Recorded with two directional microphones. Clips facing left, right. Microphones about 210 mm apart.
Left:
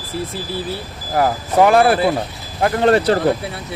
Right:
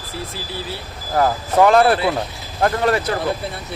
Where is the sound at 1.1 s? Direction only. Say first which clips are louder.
Left 1 dB; 15° left (ahead or behind).